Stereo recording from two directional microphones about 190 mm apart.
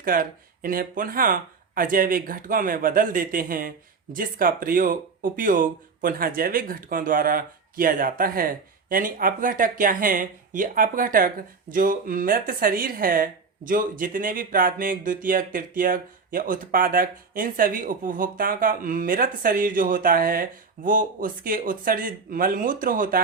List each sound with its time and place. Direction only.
0.0 s speech: 50° right (ahead or behind)